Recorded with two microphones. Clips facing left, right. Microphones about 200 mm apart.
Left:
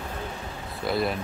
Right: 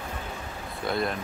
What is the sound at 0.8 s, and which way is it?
Speech, 5° left (ahead or behind).